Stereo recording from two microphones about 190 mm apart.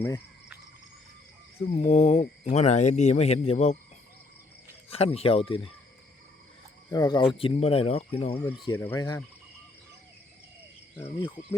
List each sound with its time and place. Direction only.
1.7 s speech: 35° left (ahead or behind)
4.9 s speech: 30° left (ahead or behind)
6.9 s speech: 20° left (ahead or behind)
8.7 s cricket: 10° left (ahead or behind)
9.0 s speech: 20° left (ahead or behind)
10.9 s cricket: 10° left (ahead or behind)